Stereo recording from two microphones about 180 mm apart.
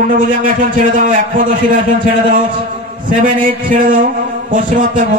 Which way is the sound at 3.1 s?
50° right (ahead or behind).